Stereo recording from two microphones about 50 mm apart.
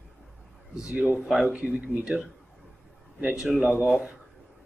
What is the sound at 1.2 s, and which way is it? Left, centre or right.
Speech, centre.